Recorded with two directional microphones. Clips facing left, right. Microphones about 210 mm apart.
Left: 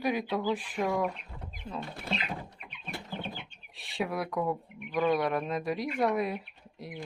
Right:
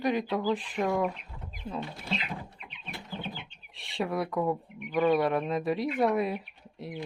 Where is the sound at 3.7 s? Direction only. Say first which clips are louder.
Right 2 dB; centre (ahead or behind).